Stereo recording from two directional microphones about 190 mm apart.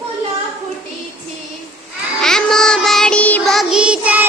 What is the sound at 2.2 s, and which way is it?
Child singing, 5° left (ahead or behind).